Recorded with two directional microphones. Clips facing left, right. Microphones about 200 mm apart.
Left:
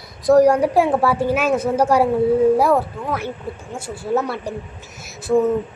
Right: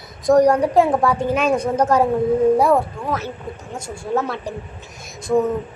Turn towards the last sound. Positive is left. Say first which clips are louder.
# left 1 dB
turn(degrees=10)  # may be behind; listen again after turning